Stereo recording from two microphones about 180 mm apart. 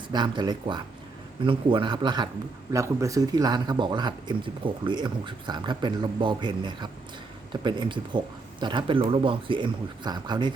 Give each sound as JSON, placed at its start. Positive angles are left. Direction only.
{"t": 0.1, "sound": "speech", "side_deg": -25}